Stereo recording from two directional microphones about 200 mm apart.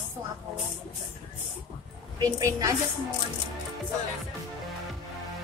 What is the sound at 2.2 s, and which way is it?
Speech, 15° right (ahead or behind).